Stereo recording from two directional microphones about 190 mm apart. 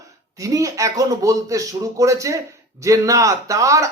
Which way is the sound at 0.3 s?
15° right (ahead or behind).